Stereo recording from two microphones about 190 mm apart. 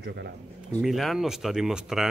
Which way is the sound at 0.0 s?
60° right (ahead or behind).